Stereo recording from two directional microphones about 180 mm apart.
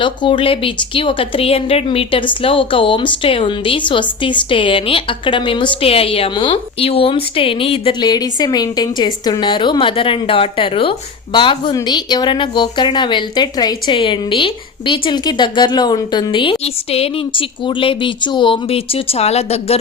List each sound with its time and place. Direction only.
0.0 s speech: 30° left (ahead or behind)